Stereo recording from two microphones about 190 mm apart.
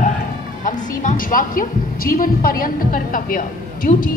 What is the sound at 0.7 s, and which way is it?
A woman's voice, 45° left (ahead or behind).